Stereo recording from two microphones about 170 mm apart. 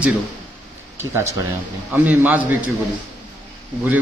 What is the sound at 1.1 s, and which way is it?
A man's voice, 15° right (ahead or behind).